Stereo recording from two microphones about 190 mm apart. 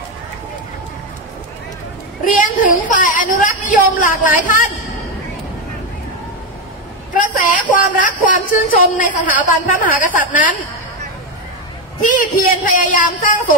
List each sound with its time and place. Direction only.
2.3 s a man's voice: 45° left (ahead or behind)
7.2 s a man's voice: 45° left (ahead or behind)
12.0 s a man's voice: 45° left (ahead or behind)